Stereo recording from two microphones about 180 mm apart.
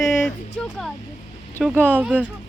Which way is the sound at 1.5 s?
10° right (ahead or behind).